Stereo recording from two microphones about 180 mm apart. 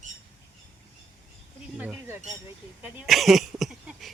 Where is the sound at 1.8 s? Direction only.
10° right (ahead or behind).